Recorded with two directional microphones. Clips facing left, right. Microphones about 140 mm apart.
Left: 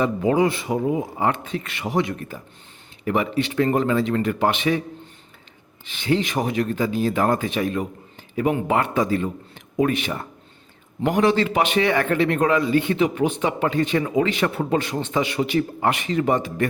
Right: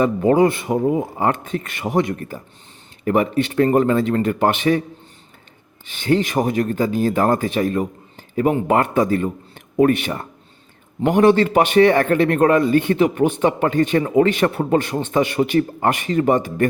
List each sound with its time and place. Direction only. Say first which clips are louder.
0.0 s speech: right 4 dB; 50° right (ahead or behind)
6.0 s speech: right 4 dB; 45° right (ahead or behind)